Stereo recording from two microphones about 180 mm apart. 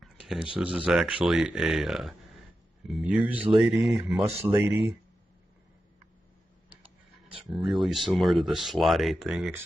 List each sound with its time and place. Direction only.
0.0 s a sound: 5° right (ahead or behind)
0.6 s speech: 5° right (ahead or behind)
7.4 s speech: centre (ahead or behind)